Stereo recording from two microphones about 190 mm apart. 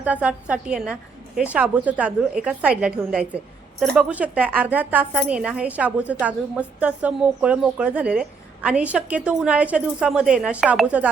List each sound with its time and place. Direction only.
0.0 s a woman's voice: 5° right (ahead or behind)